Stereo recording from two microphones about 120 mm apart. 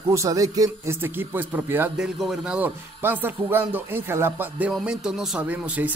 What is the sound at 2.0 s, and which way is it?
Speech, 5° right (ahead or behind).